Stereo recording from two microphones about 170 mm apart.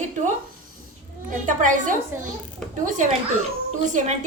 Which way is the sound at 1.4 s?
50° right (ahead or behind).